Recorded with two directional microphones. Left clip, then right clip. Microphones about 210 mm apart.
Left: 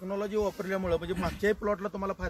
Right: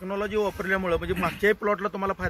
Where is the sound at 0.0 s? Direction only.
5° left (ahead or behind).